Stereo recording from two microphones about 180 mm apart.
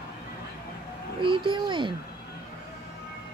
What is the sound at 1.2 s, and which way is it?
Speech, 30° right (ahead or behind).